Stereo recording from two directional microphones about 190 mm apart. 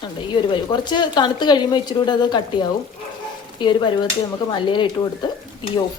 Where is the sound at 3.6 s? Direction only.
25° left (ahead or behind).